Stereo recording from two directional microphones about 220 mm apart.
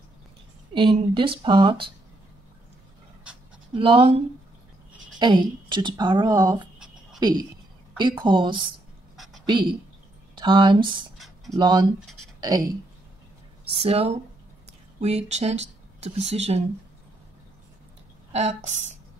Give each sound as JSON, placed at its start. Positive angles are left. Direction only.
{"t": 0.7, "sound": "speech", "side_deg": -20}
{"t": 3.7, "sound": "speech", "side_deg": -25}
{"t": 5.2, "sound": "speech", "side_deg": -20}
{"t": 9.1, "sound": "a sound", "side_deg": 0}
{"t": 9.5, "sound": "speech", "side_deg": -20}
{"t": 11.1, "sound": "a sound", "side_deg": 0}
{"t": 11.5, "sound": "speech", "side_deg": -20}
{"t": 13.7, "sound": "speech", "side_deg": -25}
{"t": 18.3, "sound": "speech", "side_deg": -30}